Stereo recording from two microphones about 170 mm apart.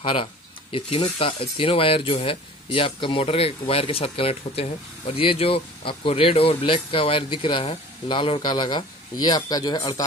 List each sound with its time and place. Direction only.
0.0 s speech: 30° left (ahead or behind)